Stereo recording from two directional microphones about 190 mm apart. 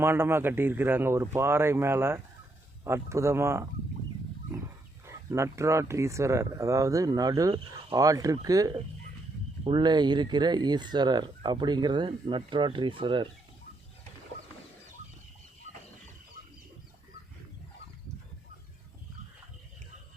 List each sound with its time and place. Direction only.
0.0 s speech: 10° right (ahead or behind)
5.0 s speech: 15° right (ahead or behind)